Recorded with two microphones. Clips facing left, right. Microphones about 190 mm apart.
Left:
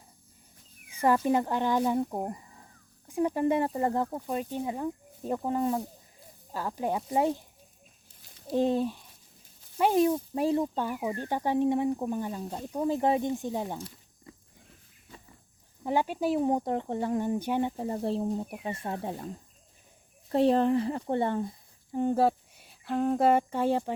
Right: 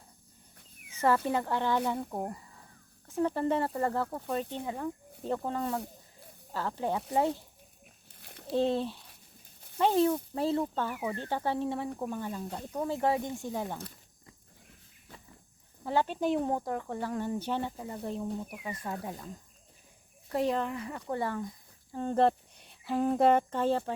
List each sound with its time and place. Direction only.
0.9 s speech: 15° left (ahead or behind)
8.2 s a sound: 65° right (ahead or behind)
8.5 s speech: 15° left (ahead or behind)
15.8 s speech: 15° left (ahead or behind)
16.5 s speech: 20° left (ahead or behind)
17.7 s speech: 30° left (ahead or behind)
20.3 s speech: 30° left (ahead or behind)
21.9 s speech: 10° left (ahead or behind)